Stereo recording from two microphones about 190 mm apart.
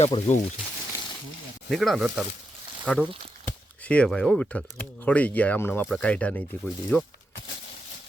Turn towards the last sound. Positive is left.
turn(degrees=10)  # may be behind; listen again after turning